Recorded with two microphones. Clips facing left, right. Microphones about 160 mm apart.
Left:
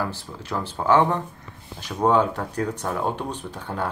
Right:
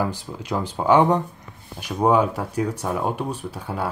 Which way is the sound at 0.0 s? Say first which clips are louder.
Right 3 dB; 15° right (ahead or behind).